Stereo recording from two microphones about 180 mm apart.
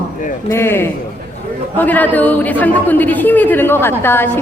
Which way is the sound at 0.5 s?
15° left (ahead or behind).